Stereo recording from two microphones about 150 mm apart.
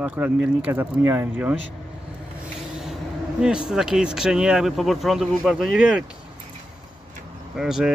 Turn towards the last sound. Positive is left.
turn(degrees=-5)  # may be behind; listen again after turning